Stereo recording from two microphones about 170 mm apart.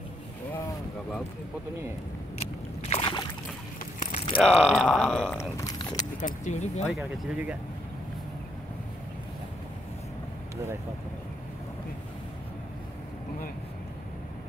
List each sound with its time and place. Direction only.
2.9 s boat: 30° left (ahead or behind)
4.4 s speech: 5° left (ahead or behind)
5.4 s a sound: 20° left (ahead or behind)
5.9 s speech: 45° left (ahead or behind)
6.9 s speech: 5° right (ahead or behind)